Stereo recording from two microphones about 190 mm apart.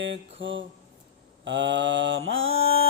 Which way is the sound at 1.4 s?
70° right (ahead or behind).